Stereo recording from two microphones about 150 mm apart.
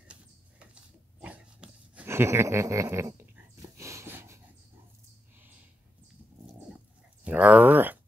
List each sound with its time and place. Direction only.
1.2 s dog: 5° right (ahead or behind)
7.2 s speech: 10° right (ahead or behind)